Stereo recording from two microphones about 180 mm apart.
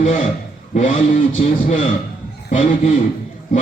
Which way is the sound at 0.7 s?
45° left (ahead or behind).